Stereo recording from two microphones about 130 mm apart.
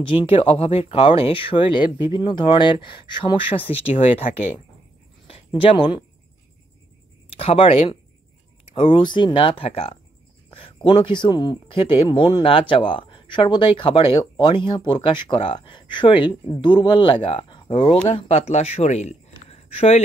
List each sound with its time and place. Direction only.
0.0 s speech: 40° left (ahead or behind)
5.2 s a sound: 45° left (ahead or behind)
7.2 s speech: 45° left (ahead or behind)